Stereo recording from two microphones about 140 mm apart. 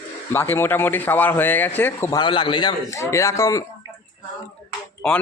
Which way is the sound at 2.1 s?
35° left (ahead or behind).